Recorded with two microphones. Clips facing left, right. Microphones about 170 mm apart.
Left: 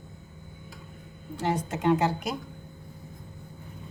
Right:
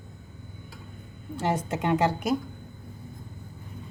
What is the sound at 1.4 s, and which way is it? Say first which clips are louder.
Speech: even; 55° right (ahead or behind).